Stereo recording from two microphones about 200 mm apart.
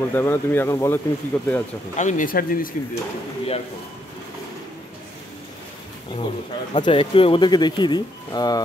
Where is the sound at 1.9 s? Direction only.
40° left (ahead or behind).